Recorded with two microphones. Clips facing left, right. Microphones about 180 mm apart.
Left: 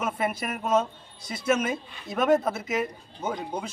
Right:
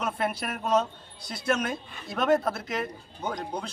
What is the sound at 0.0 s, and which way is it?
A man's voice, centre (ahead or behind).